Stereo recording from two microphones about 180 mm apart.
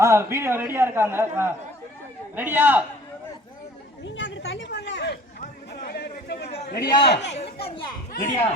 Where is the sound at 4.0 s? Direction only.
90° left; by 6.5 s 60° left (ahead or behind).